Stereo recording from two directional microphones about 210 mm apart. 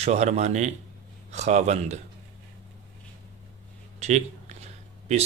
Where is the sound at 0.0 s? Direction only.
30° right (ahead or behind).